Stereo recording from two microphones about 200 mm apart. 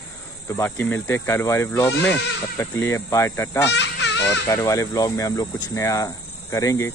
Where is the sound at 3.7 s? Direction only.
60° left (ahead or behind).